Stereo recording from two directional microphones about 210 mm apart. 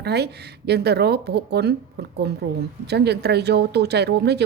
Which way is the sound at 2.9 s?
50° right (ahead or behind).